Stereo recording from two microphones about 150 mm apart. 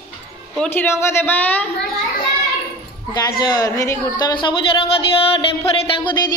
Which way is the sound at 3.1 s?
25° left (ahead or behind).